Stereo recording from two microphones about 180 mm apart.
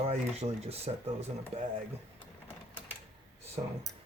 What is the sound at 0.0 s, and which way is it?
Speech, 35° right (ahead or behind).